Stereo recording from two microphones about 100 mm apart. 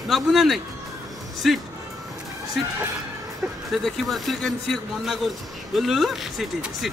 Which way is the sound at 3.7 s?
Centre (ahead or behind).